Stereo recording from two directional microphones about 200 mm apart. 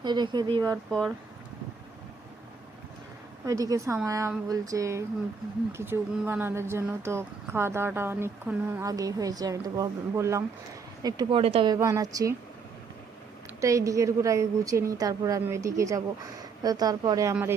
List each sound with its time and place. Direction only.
0.0 s speech: 20° right (ahead or behind)
0.9 s speech: centre (ahead or behind)
3.4 s speech: 15° right (ahead or behind)
11.7 s speech: 15° right (ahead or behind)
13.6 s speech: 15° right (ahead or behind)